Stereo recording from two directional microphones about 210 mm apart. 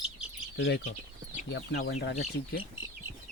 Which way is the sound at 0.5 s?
55° left (ahead or behind).